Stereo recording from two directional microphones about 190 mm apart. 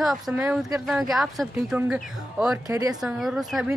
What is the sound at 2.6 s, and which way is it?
Speech, 20° right (ahead or behind).